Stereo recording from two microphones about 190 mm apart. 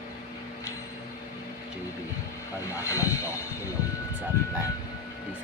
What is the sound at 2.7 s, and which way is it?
Speech, 15° left (ahead or behind).